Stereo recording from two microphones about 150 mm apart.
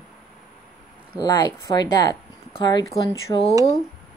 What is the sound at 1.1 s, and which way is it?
Speech, 25° left (ahead or behind).